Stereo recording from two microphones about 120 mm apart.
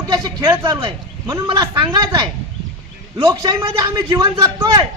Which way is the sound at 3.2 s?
30° right (ahead or behind).